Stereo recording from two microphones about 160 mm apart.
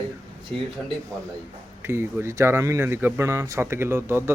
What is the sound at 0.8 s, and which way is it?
Speech, 5° left (ahead or behind).